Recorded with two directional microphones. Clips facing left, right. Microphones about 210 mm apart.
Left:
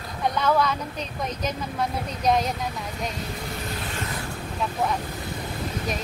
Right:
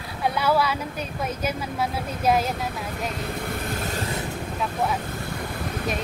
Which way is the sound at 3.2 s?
55° right (ahead or behind).